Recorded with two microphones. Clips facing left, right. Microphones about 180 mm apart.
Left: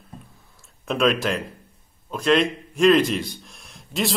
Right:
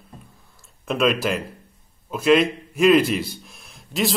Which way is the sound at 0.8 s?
Centre (ahead or behind).